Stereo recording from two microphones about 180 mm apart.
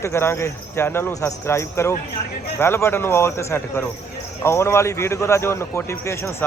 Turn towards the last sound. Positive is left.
turn(degrees=15)  # may be behind; listen again after turning